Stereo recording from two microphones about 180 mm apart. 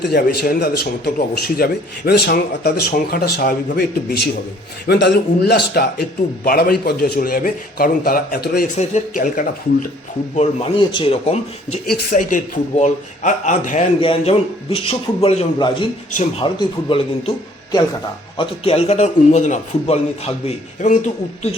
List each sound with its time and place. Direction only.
0.1 s a man's voice: 60° left (ahead or behind)
10.3 s a man's voice: 30° left (ahead or behind)
11.9 s speech: 45° left (ahead or behind)
14.0 s a man's voice: 30° left (ahead or behind)